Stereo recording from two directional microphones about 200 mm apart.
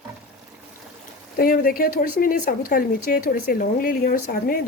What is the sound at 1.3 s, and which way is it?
Speech, 45° left (ahead or behind).